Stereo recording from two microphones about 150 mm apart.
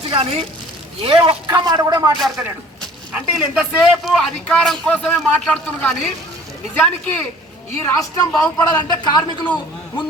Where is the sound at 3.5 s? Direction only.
Centre (ahead or behind).